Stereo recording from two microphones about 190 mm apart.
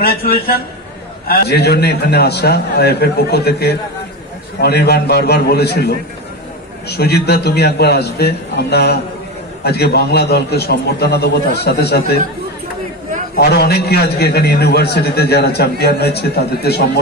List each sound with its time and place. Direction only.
0.0 s a man's voice: 55° left (ahead or behind)
13.4 s a man's voice: 60° left (ahead or behind)